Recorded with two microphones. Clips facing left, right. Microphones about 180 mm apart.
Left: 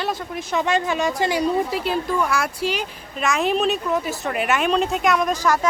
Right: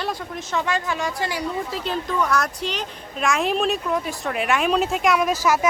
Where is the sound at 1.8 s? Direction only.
10° left (ahead or behind).